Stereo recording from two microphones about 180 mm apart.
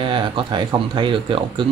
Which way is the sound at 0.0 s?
30° right (ahead or behind).